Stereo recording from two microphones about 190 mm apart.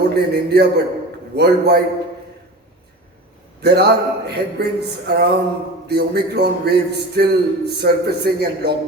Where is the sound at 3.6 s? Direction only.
60° right (ahead or behind).